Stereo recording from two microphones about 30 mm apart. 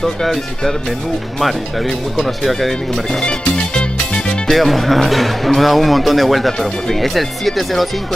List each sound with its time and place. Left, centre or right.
0.0 s speech: centre
3.3 s music: left
4.5 s speech: centre